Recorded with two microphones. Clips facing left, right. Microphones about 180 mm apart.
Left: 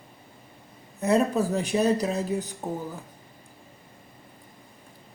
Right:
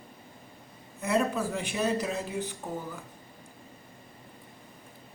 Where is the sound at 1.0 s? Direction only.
35° left (ahead or behind).